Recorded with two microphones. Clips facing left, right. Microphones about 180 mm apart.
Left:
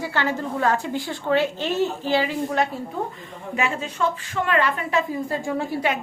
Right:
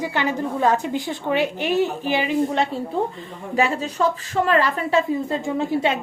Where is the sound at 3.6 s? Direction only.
35° right (ahead or behind).